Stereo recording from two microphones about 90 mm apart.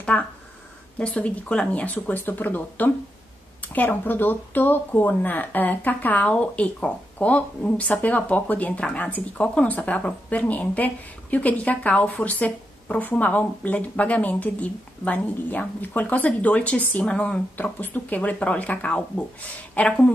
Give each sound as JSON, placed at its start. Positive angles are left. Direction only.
{"t": 0.1, "sound": "speech", "side_deg": 15}